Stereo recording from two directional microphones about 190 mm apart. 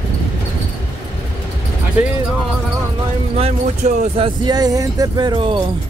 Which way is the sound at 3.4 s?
35° right (ahead or behind).